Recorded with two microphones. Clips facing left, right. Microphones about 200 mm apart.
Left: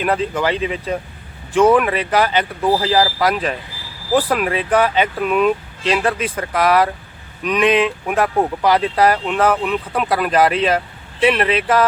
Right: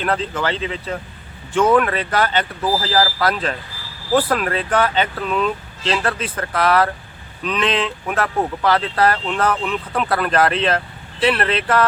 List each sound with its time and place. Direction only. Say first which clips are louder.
0.0 s speech: left 3 dB; 10° left (ahead or behind)